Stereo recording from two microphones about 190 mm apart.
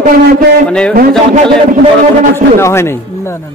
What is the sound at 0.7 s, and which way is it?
Speech, 5° left (ahead or behind).